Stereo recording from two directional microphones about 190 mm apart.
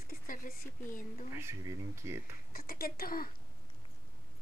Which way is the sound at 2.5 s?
50° left (ahead or behind).